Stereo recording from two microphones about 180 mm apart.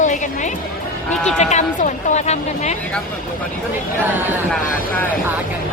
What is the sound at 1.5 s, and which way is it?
A woman's voice, 40° left (ahead or behind).